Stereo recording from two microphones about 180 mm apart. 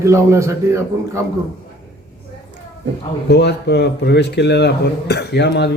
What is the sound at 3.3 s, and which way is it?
Speech, 70° left (ahead or behind).